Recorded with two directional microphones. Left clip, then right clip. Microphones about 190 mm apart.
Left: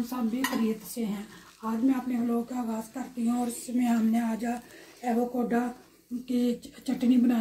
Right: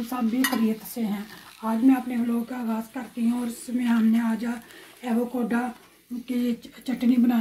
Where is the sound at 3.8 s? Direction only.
40° right (ahead or behind).